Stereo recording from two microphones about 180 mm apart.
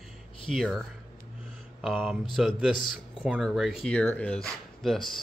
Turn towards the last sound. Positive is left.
turn(degrees=0)  # may be behind; listen again after turning